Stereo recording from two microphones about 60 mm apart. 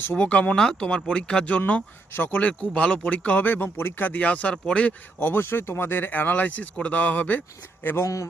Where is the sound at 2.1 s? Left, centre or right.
Left.